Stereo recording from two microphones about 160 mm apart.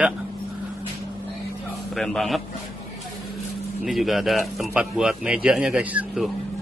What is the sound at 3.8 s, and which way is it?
Speech, centre (ahead or behind).